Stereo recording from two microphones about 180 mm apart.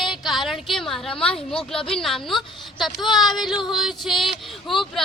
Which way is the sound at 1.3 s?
5° left (ahead or behind).